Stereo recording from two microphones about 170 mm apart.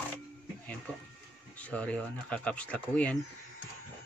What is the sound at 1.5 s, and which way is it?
Speech, 10° left (ahead or behind).